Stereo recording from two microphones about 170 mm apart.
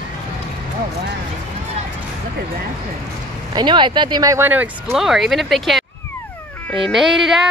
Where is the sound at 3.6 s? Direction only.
30° right (ahead or behind); by 4.7 s 10° right (ahead or behind).